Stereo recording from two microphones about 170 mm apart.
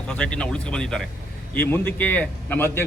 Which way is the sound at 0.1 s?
5° left (ahead or behind).